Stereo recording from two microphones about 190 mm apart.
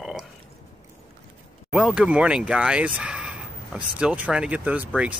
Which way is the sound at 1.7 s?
5° right (ahead or behind).